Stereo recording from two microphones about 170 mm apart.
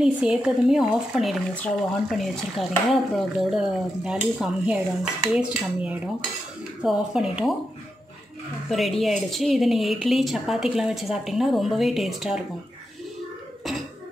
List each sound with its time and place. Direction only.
0.0 s speech: 5° right (ahead or behind)
8.6 s speech: centre (ahead or behind)